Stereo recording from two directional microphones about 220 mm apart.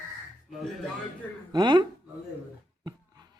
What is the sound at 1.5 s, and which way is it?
Speech, 20° right (ahead or behind).